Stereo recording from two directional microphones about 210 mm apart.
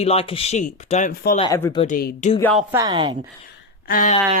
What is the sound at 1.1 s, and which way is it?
Speech, 45° left (ahead or behind).